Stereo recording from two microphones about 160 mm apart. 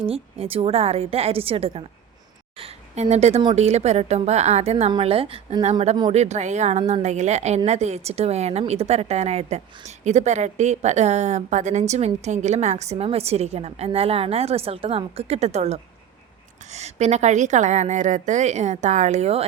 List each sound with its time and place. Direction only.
0.0 s a woman's voice: 35° right (ahead or behind)